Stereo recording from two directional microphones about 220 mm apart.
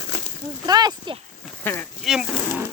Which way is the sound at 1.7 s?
10° left (ahead or behind).